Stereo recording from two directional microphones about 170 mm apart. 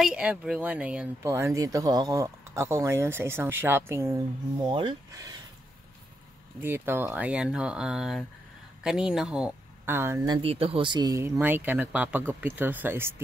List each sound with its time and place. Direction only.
0.0 s speech: 5° right (ahead or behind)
4.6 s speech: 30° right (ahead or behind)
6.6 s speech: 15° right (ahead or behind)